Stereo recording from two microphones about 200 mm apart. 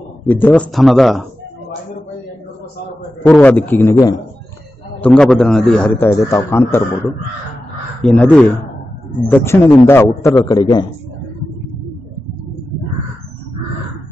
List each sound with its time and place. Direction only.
0.2 s a man's voice: 10° left (ahead or behind)
3.3 s a man's voice: 10° left (ahead or behind)
5.0 s a man's voice: 5° left (ahead or behind)
8.0 s a man's voice: 5° left (ahead or behind)